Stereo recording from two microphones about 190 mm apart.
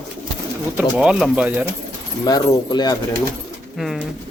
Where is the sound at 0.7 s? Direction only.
5° right (ahead or behind).